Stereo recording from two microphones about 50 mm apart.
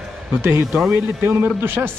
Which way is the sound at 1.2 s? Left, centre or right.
Right.